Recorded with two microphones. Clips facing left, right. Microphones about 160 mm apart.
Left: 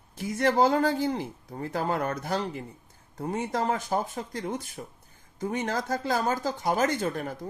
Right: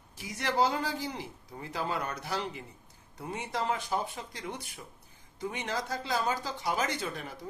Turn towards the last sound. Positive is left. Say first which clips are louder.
# left 7 dB
turn(degrees=50)  # may be behind; listen again after turning